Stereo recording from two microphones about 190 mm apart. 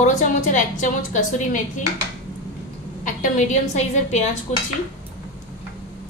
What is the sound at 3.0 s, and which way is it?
A woman's voice, 45° left (ahead or behind).